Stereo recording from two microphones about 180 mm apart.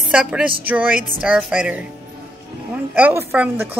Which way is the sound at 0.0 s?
5° right (ahead or behind).